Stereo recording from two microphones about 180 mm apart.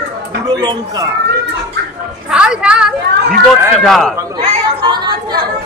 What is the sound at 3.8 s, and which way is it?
Speech, centre (ahead or behind).